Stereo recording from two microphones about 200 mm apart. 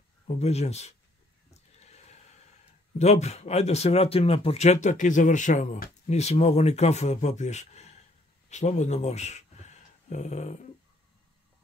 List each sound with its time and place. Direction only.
0.4 s speech: 30° left (ahead or behind)
1.5 s a sound: 35° left (ahead or behind)
3.0 s speech: 35° left (ahead or behind)